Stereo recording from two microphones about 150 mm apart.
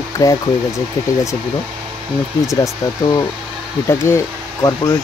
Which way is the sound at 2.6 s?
25° left (ahead or behind).